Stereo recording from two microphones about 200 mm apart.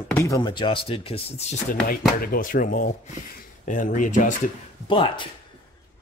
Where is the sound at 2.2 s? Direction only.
45° left (ahead or behind).